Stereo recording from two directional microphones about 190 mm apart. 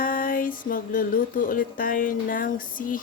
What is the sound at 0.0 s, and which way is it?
Music, 50° left (ahead or behind).